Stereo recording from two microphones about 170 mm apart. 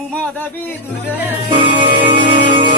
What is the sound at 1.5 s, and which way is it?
Music, 35° right (ahead or behind).